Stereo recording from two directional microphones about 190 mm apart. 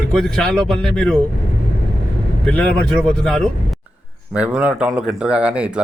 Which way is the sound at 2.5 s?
5° left (ahead or behind).